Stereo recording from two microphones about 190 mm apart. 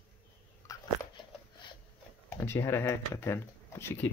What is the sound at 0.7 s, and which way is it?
Biting, 20° left (ahead or behind).